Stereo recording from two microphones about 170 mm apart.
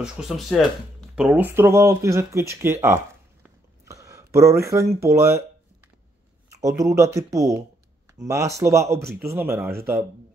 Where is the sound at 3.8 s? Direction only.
20° right (ahead or behind).